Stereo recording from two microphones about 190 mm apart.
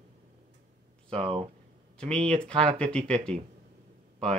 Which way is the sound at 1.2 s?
30° right (ahead or behind).